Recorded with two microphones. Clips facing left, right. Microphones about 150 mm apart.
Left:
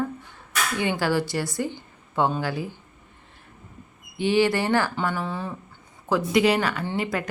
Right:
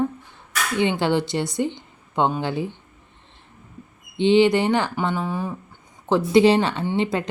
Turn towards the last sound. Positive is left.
turn(degrees=-25)  # may be behind; listen again after turning